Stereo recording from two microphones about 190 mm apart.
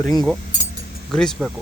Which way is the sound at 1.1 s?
Centre (ahead or behind).